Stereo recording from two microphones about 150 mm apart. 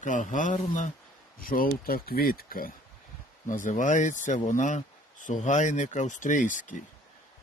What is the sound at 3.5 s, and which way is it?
Speech, 60° left (ahead or behind).